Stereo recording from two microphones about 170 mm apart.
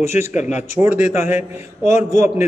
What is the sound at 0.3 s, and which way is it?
Speech, 45° left (ahead or behind).